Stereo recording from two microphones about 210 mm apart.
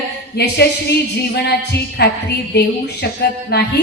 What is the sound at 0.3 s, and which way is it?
Speech, 50° left (ahead or behind).